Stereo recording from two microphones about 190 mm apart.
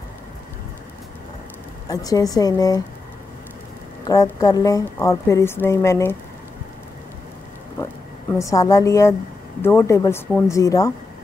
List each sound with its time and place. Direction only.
1.9 s a woman's voice: 20° left (ahead or behind)
4.1 s a woman's voice: 20° left (ahead or behind)
7.8 s a woman's voice: 15° left (ahead or behind)